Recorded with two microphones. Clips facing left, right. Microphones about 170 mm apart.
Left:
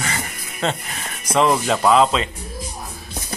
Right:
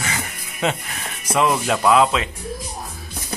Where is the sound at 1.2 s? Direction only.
Centre (ahead or behind).